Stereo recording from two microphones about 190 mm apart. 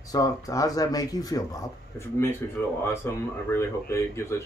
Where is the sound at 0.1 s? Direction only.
20° left (ahead or behind).